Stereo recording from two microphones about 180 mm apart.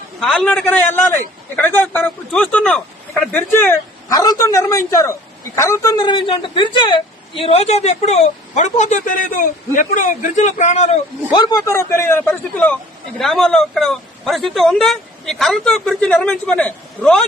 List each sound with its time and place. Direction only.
0.2 s a woman's voice: 5° left (ahead or behind); by 10.9 s 40° left (ahead or behind)
11.3 s a woman's voice: 25° left (ahead or behind); by 17.2 s 5° left (ahead or behind)